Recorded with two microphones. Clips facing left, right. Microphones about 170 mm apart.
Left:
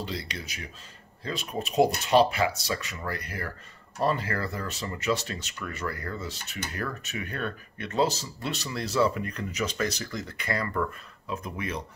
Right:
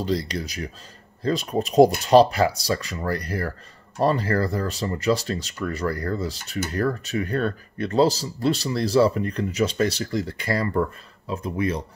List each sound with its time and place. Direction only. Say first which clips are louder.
0.0 s speech: right 10 dB; 40° right (ahead or behind)